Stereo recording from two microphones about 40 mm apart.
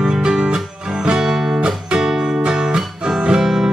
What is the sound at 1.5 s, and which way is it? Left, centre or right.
Music, right.